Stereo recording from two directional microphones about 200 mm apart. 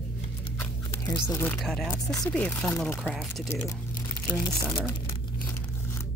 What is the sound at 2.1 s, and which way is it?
Speech, 15° left (ahead or behind).